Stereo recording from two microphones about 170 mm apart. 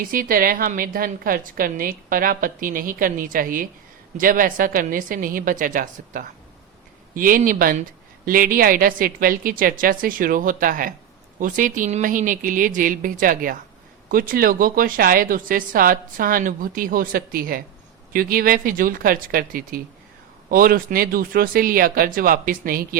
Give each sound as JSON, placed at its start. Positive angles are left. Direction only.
{"t": 0.0, "sound": "a woman's voice", "side_deg": -55}